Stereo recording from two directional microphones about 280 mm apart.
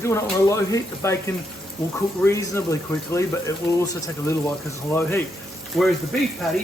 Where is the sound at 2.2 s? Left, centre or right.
Centre.